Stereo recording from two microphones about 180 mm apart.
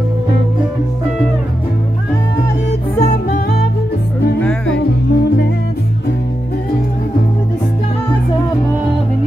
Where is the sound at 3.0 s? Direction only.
55° left (ahead or behind).